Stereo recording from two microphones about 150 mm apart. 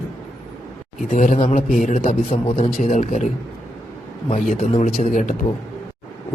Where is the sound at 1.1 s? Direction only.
55° left (ahead or behind).